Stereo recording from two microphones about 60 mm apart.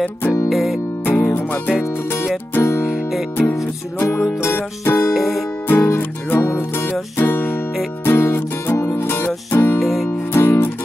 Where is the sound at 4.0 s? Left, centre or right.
Left.